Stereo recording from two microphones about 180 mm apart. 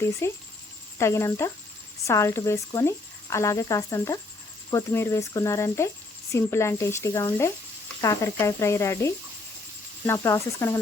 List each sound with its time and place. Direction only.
0.2 s a woman's voice: 15° left (ahead or behind)